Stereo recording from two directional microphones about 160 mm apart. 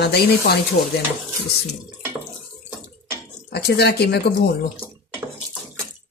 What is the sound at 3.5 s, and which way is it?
Speech, 90° left.